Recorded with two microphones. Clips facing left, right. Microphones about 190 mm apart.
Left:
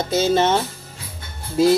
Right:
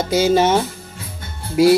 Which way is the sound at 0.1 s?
10° right (ahead or behind).